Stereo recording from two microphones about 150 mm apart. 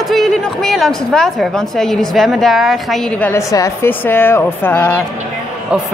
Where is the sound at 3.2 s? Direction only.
15° left (ahead or behind).